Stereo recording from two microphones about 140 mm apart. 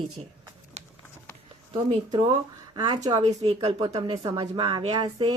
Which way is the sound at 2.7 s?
30° right (ahead or behind).